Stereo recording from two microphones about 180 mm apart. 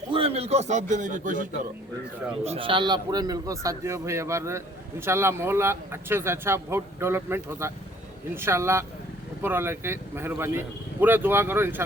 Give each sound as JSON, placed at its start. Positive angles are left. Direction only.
{"t": 0.1, "sound": "a man's voice", "side_deg": -30}
{"t": 2.4, "sound": "a man's voice", "side_deg": -30}